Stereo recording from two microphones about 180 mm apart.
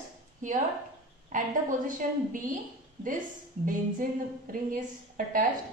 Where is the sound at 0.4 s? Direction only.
45° right (ahead or behind).